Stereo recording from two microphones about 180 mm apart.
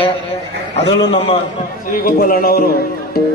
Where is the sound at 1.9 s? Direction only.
50° left (ahead or behind).